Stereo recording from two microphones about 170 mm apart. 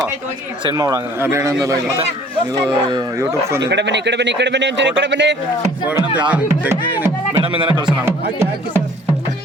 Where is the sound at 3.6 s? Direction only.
90° right.